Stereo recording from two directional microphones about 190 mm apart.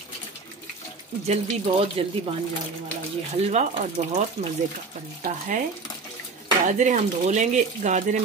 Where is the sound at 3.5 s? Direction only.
35° right (ahead or behind).